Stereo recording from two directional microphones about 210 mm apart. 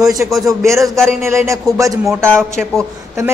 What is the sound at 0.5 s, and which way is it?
Speech, 15° right (ahead or behind).